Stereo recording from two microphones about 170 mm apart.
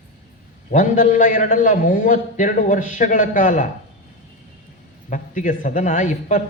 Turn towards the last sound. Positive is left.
turn(degrees=45)  # may be behind; listen again after turning